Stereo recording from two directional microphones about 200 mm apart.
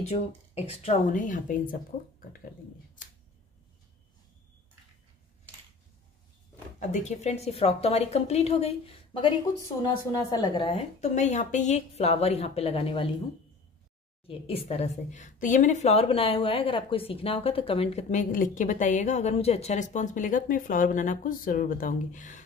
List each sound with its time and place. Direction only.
0.1 s a woman's voice: 30° left (ahead or behind)
6.8 s a woman's voice: 35° left (ahead or behind)
14.2 s a woman's voice: 30° left (ahead or behind)